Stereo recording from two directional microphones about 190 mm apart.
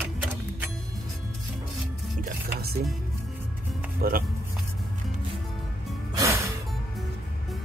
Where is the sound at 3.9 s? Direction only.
50° right (ahead or behind).